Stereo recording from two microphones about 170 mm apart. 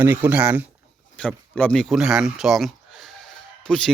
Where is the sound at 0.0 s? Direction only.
10° right (ahead or behind).